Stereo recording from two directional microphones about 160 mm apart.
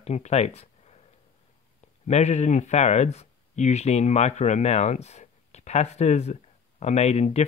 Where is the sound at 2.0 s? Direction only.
45° left (ahead or behind).